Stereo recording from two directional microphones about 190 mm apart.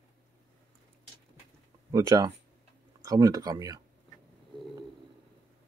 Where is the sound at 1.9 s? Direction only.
20° right (ahead or behind).